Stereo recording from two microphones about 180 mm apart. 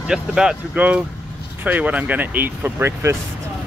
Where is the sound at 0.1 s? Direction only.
5° right (ahead or behind).